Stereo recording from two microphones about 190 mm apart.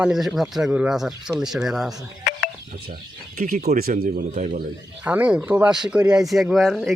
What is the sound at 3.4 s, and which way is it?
Speech, 50° right (ahead or behind).